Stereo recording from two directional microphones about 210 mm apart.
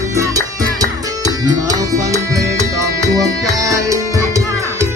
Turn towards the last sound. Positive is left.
turn(degrees=-15)  # may be behind; listen again after turning